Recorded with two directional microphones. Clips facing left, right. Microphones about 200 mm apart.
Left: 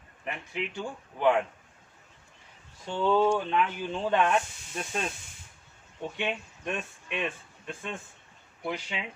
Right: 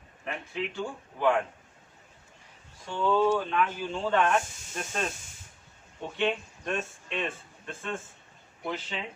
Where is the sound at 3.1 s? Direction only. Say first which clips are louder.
Even; 15° left (ahead or behind).